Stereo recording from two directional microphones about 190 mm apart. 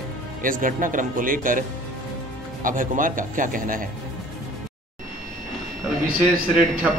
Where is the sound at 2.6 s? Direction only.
45° right (ahead or behind).